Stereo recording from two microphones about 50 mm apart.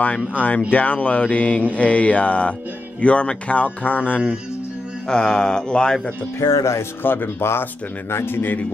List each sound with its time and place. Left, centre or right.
0.0 s speech: left
0.7 s mantra: left
5.0 s a sound: centre
6.4 s speech: left
7.0 s speech: left